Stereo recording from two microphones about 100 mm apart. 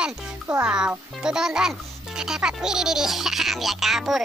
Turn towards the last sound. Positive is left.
turn(degrees=-5)  # may be behind; listen again after turning